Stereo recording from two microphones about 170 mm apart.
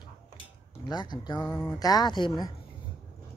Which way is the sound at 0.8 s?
25° left (ahead or behind).